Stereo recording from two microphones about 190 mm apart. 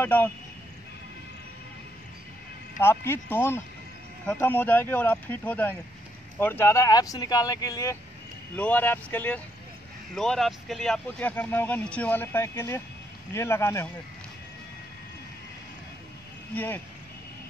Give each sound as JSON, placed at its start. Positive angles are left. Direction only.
{"t": 0.0, "sound": "speech", "side_deg": 10}
{"t": 2.8, "sound": "speech", "side_deg": 10}
{"t": 16.5, "sound": "speech", "side_deg": 10}